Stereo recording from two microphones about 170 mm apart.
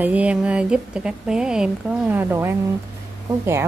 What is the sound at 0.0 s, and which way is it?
A woman's voice, 10° right (ahead or behind).